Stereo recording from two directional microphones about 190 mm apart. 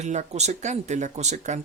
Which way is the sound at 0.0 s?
35° right (ahead or behind).